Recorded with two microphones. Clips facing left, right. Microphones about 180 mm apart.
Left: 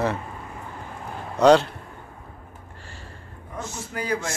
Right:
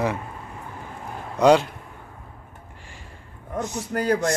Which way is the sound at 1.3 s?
10° right (ahead or behind).